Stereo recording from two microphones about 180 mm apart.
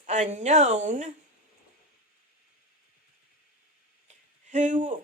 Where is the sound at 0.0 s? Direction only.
40° right (ahead or behind).